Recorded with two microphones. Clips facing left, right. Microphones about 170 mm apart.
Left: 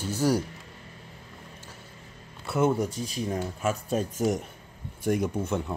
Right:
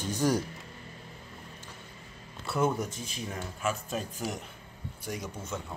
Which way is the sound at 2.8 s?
35° left (ahead or behind).